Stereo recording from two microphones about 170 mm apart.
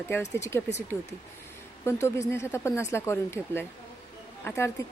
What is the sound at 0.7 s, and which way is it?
Speech, 40° left (ahead or behind).